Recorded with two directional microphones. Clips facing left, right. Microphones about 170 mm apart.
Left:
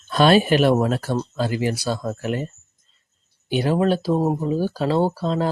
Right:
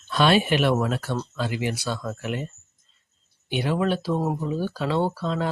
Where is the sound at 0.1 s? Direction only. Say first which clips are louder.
Left 4 dB; 40° left (ahead or behind).